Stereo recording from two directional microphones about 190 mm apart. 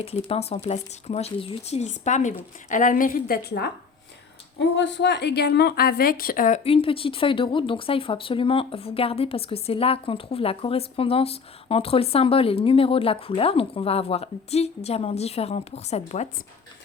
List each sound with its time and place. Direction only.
0.0 s speech: 30° left (ahead or behind); by 3.7 s 55° left (ahead or behind)
4.6 s a woman's voice: 70° left (ahead or behind); by 6.6 s 45° left (ahead or behind)
6.7 s speech: 30° left (ahead or behind)